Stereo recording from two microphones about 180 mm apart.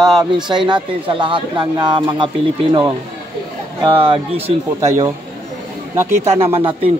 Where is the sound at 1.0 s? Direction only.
30° right (ahead or behind).